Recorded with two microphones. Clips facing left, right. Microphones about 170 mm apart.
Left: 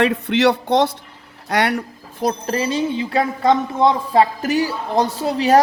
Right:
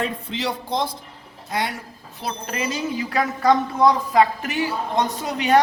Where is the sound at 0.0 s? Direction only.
80° left.